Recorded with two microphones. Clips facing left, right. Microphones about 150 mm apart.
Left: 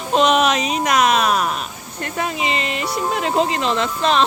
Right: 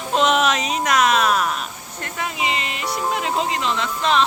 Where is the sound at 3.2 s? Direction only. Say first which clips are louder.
Left 4 dB; 40° left (ahead or behind).